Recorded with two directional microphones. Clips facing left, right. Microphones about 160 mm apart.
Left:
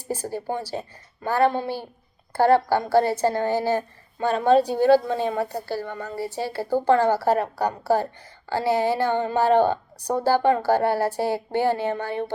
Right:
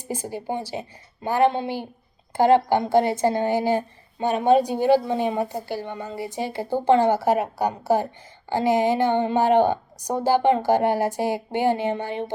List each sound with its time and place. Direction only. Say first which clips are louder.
0.1 s a woman's voice: left 1 dB; 15° right (ahead or behind)